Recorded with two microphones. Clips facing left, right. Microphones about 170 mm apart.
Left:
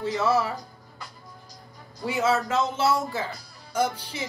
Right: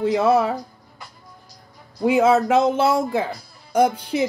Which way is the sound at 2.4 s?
65° right (ahead or behind).